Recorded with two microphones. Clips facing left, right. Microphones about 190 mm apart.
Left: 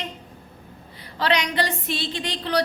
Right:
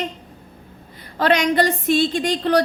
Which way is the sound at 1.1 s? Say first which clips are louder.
Right 6 dB; 50° right (ahead or behind).